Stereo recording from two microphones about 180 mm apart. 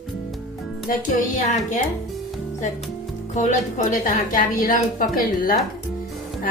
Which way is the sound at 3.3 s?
45° left (ahead or behind).